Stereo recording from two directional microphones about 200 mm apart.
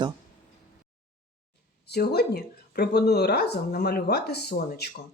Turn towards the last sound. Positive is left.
turn(degrees=55)  # may be behind; listen again after turning